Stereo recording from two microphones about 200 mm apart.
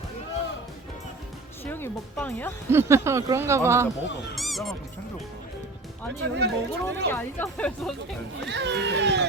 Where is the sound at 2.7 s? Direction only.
15° right (ahead or behind).